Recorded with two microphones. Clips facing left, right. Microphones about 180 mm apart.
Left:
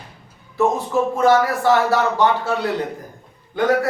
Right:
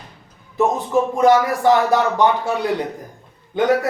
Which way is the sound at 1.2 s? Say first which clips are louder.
Right 1 dB; 15° right (ahead or behind).